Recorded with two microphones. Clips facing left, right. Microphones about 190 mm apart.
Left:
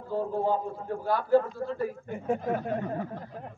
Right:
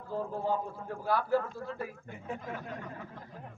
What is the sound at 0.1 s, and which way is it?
Speech, 30° left (ahead or behind).